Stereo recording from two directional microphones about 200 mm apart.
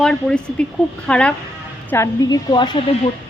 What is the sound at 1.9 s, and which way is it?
Speech, 15° left (ahead or behind).